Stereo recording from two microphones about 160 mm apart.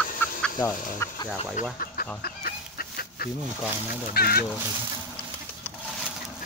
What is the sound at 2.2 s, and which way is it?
Fowl, 70° left (ahead or behind).